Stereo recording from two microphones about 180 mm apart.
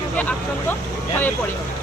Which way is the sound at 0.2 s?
10° left (ahead or behind).